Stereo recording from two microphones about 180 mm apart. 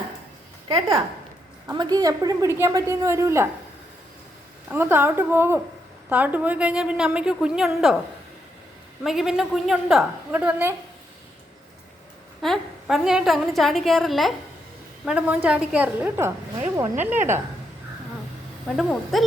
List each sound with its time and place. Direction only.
0.7 s a woman's voice: 30° right (ahead or behind)
4.7 s a woman's voice: 10° right (ahead or behind)
9.0 s a woman's voice: centre (ahead or behind)
12.4 s a woman's voice: centre (ahead or behind)
18.8 s a woman's voice: centre (ahead or behind)